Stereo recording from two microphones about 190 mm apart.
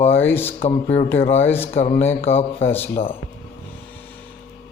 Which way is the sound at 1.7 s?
30° left (ahead or behind).